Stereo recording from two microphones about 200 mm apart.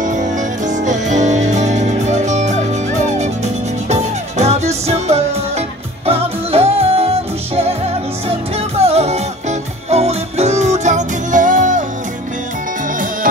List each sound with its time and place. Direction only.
0.0 s music: 40° right (ahead or behind)
3.9 s music: 35° right (ahead or behind)
8.5 s music: 30° right (ahead or behind)